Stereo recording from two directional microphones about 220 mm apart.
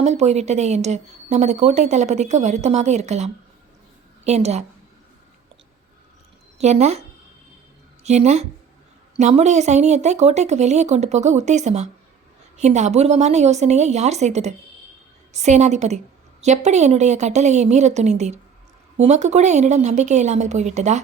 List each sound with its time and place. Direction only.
0.0 s a woman's voice: 30° right (ahead or behind)
6.6 s speech: 30° right (ahead or behind)
8.0 s speech: 30° right (ahead or behind)